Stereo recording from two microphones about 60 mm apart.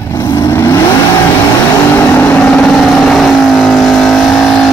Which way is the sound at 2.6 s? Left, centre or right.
Centre.